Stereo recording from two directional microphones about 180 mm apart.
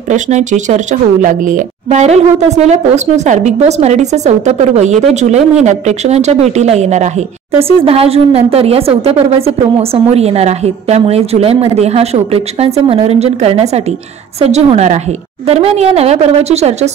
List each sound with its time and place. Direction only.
0.1 s speech: 40° right (ahead or behind)